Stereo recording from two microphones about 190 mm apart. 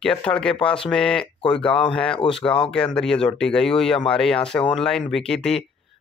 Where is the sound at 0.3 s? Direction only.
5° left (ahead or behind).